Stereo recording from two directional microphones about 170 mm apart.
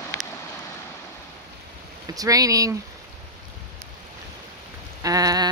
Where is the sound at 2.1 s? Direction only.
20° right (ahead or behind).